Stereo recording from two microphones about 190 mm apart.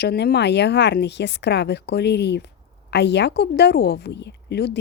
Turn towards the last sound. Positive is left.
turn(degrees=60)  # may be behind; listen again after turning